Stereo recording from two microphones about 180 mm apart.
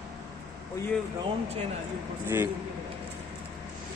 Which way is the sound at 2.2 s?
15° right (ahead or behind).